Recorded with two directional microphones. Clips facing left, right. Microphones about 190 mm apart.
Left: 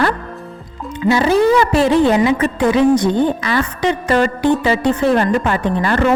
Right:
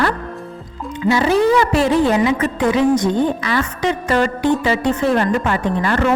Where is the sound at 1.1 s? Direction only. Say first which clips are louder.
Left 2 dB; 35° left (ahead or behind).